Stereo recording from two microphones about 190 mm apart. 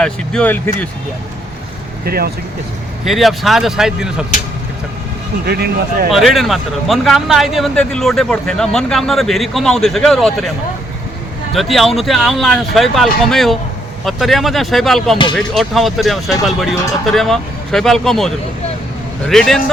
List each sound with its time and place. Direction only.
0.0 s speech: 5° left (ahead or behind)
2.0 s speech: 55° right (ahead or behind)
3.0 s speech: centre (ahead or behind)
5.5 s speech: 55° right (ahead or behind)
6.1 s speech: centre (ahead or behind)
11.5 s speech: centre (ahead or behind)
19.3 s speech: centre (ahead or behind)